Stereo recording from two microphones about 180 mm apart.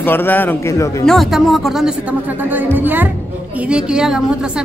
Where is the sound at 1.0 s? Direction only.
Centre (ahead or behind).